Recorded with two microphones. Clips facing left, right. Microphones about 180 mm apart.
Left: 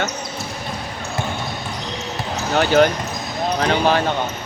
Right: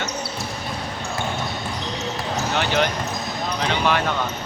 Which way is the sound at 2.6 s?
40° left (ahead or behind).